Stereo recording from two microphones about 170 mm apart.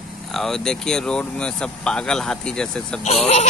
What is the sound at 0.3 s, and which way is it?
Speech, centre (ahead or behind).